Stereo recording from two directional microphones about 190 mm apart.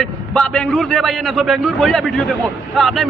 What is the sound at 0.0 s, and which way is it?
A man's voice, 5° left (ahead or behind).